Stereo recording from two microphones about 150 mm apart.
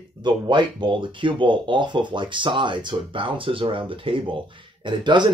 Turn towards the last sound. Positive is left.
turn(degrees=-30)  # may be behind; listen again after turning